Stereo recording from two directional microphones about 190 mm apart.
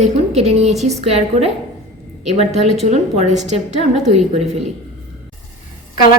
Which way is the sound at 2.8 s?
35° right (ahead or behind).